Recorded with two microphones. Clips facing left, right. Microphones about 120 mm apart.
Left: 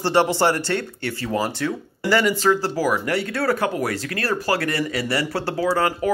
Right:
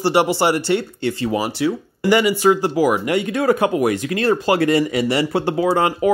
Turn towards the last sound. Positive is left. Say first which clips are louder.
# right 4 dB
turn(degrees=-20)  # may be behind; listen again after turning